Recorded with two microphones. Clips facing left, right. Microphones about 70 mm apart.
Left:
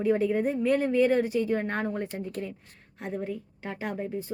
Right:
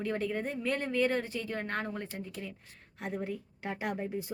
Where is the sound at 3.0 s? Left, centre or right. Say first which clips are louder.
Left 3 dB; centre.